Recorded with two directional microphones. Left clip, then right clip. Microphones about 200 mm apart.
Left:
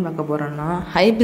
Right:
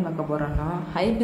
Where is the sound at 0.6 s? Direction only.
35° left (ahead or behind).